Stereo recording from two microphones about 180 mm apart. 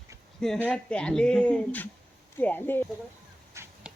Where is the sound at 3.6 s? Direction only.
15° right (ahead or behind).